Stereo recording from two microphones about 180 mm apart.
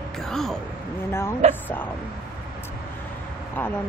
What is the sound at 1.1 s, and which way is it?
Speech, 15° left (ahead or behind).